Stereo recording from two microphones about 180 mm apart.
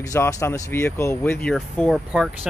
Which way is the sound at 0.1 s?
15° left (ahead or behind).